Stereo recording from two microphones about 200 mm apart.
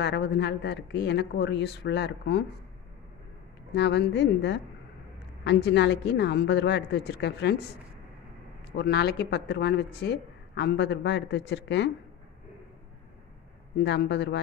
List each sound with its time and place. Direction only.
0.0 s speech: 60° left (ahead or behind)
3.7 s speech: 60° left (ahead or behind)
8.7 s speech: 55° left (ahead or behind)
13.7 s speech: 60° left (ahead or behind)